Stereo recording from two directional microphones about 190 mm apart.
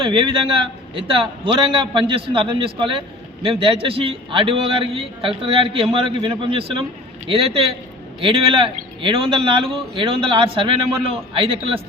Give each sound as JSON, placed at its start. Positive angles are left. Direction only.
{"t": 0.0, "sound": "a man's voice", "side_deg": -25}